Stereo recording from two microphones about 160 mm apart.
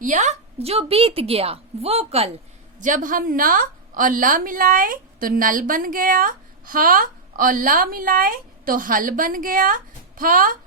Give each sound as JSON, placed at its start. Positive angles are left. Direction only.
{"t": 0.0, "sound": "a woman's voice", "side_deg": -50}
{"t": 2.8, "sound": "a woman's voice", "side_deg": -55}